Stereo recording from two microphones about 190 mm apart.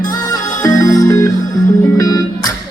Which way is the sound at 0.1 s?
20° left (ahead or behind).